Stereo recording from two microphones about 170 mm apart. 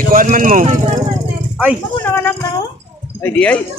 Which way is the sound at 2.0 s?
10° left (ahead or behind).